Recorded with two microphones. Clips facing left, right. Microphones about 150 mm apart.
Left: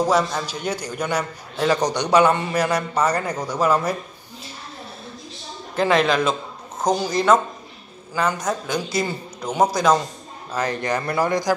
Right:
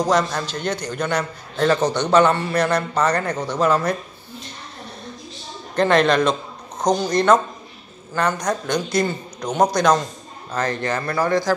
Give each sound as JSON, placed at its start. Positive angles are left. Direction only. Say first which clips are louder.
{"t": 0.0, "sound": "a man's voice", "louder": "even", "side_deg": 5}
{"t": 5.8, "sound": "a man's voice", "louder": "right 2 dB", "side_deg": 5}